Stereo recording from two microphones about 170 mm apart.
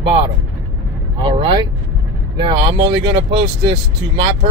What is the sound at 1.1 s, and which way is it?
Speech, 25° right (ahead or behind).